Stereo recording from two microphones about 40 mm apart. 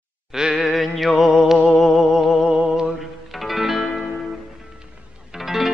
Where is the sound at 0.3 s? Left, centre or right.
Centre.